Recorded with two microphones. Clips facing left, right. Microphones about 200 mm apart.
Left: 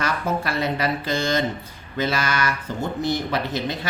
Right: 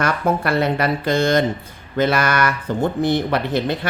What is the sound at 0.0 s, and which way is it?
Speech, 55° right (ahead or behind).